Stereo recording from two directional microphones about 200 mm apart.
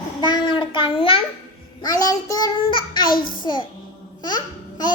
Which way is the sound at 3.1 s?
45° left (ahead or behind).